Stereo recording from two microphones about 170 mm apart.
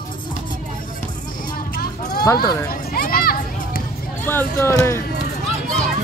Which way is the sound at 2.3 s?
65° left (ahead or behind).